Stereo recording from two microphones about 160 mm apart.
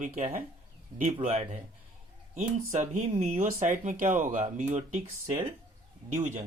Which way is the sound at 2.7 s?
45° right (ahead or behind).